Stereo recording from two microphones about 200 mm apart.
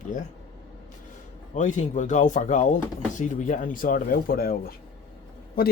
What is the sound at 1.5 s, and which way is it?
Speech, 40° left (ahead or behind).